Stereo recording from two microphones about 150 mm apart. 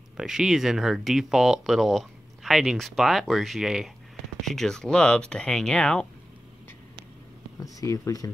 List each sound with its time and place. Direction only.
0.2 s speech: 5° right (ahead or behind)
7.6 s speech: 20° left (ahead or behind)